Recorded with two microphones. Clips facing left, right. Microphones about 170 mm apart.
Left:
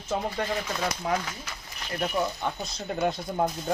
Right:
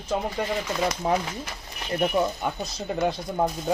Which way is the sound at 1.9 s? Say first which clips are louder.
Right 5 dB; 15° right (ahead or behind).